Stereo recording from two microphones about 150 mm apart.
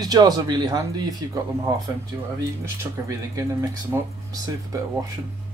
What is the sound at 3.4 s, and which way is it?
Speech, 20° right (ahead or behind).